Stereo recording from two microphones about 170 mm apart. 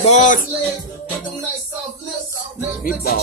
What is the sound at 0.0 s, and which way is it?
Music, 45° left (ahead or behind).